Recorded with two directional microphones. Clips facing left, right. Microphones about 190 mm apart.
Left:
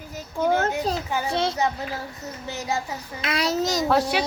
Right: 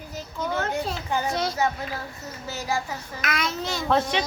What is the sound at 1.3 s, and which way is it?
A child's voice, 25° left (ahead or behind).